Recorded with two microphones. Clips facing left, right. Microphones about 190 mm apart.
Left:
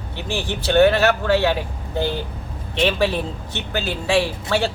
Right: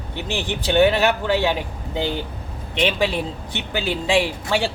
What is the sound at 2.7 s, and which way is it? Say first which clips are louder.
Speech: left 1 dB; 15° right (ahead or behind).